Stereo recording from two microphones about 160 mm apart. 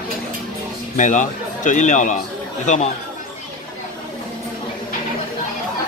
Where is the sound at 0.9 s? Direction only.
50° left (ahead or behind).